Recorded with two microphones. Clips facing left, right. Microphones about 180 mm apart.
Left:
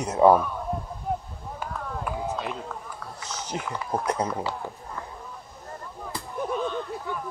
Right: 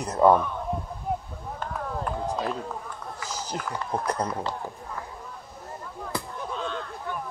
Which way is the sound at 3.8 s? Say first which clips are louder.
Left 2 dB; 5° left (ahead or behind).